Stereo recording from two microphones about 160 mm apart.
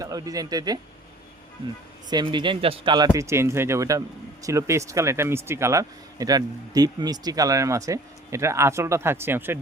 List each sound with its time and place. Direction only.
0.0 s speech: 20° right (ahead or behind)
2.0 s speech: 30° right (ahead or behind)